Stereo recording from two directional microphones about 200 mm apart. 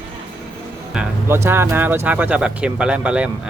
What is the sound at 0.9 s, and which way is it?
Speech, 10° right (ahead or behind).